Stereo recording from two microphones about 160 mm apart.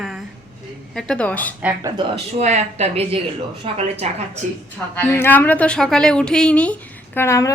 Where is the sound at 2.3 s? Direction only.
45° right (ahead or behind).